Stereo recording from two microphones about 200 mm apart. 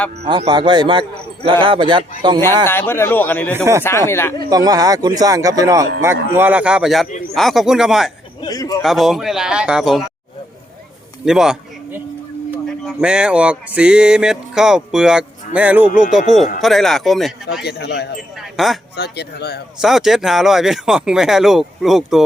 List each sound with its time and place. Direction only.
0.3 s speech: 25° right (ahead or behind)
2.6 s speech: 10° left (ahead or behind)
4.4 s speech: 20° right (ahead or behind); by 8.1 s centre (ahead or behind)
8.4 s a man's voice: 20° left (ahead or behind)
8.8 s speech: centre (ahead or behind)
11.3 s speech: 5° right (ahead or behind)
12.6 s speech: centre (ahead or behind)
17.6 s speech: 55° left (ahead or behind)
18.5 s speech: centre (ahead or behind)
18.9 s speech: 55° left (ahead or behind)
19.8 s speech: centre (ahead or behind)